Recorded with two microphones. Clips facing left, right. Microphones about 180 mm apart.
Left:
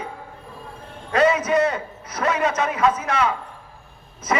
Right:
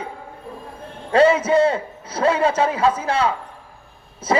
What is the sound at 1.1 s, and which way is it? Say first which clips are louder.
A man's voice: right 4 dB; 30° right (ahead or behind).